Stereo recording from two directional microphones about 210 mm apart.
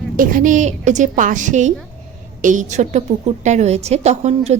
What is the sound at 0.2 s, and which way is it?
A woman's voice, 40° right (ahead or behind).